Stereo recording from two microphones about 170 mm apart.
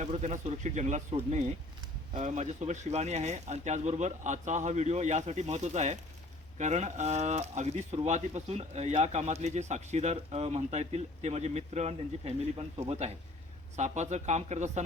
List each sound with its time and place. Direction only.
0.0 s speech: 45° right (ahead or behind)